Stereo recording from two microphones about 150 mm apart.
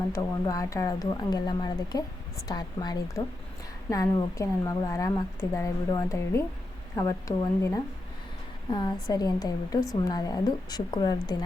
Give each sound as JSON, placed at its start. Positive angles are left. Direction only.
{"t": 0.1, "sound": "a woman's voice", "side_deg": 25}
{"t": 8.7, "sound": "a woman's voice", "side_deg": 30}